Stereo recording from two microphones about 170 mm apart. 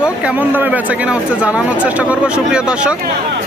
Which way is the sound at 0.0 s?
5° right (ahead or behind).